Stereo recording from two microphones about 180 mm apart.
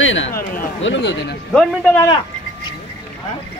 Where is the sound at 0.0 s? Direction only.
90° left.